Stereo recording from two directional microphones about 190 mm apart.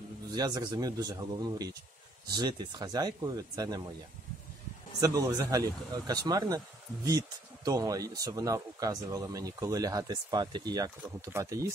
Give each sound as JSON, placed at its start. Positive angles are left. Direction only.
{"t": 0.3, "sound": "speech", "side_deg": -20}
{"t": 5.0, "sound": "speech", "side_deg": -15}